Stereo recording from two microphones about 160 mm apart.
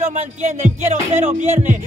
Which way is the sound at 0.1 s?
50° right (ahead or behind).